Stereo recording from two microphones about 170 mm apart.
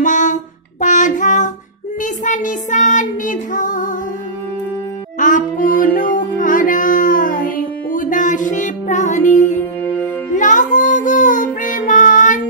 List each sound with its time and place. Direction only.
0.0 s music: 45° left (ahead or behind)
2.0 s child singing: 50° left (ahead or behind)
5.2 s music: 50° left (ahead or behind)
10.3 s child singing: 50° left (ahead or behind)